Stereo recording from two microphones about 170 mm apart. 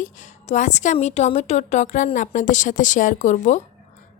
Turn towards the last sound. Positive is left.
turn(degrees=45)  # may be behind; listen again after turning